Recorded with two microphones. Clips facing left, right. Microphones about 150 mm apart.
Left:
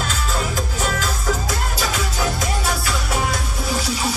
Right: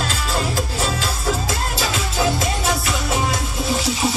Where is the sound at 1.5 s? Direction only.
25° right (ahead or behind).